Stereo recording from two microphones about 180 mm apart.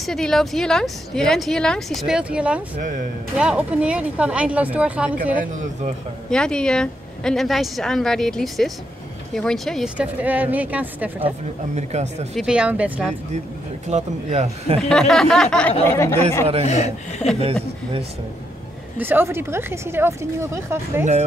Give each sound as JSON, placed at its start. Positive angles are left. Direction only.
{"t": 0.0, "sound": "speech", "side_deg": 0}
{"t": 6.3, "sound": "speech", "side_deg": 5}
{"t": 10.2, "sound": "speech", "side_deg": -10}
{"t": 11.2, "sound": "speech", "side_deg": -40}
{"t": 12.4, "sound": "speech", "side_deg": -5}
{"t": 13.8, "sound": "speech", "side_deg": -40}
{"t": 14.8, "sound": "speech", "side_deg": 0}
{"t": 16.6, "sound": "a man's voice", "side_deg": 40}
{"t": 18.9, "sound": "speech", "side_deg": -10}
{"t": 21.0, "sound": "speech", "side_deg": -35}